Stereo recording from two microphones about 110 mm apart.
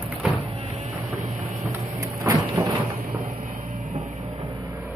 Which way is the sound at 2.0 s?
30° right (ahead or behind).